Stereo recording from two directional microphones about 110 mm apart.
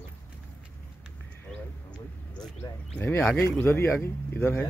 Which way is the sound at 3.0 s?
15° left (ahead or behind).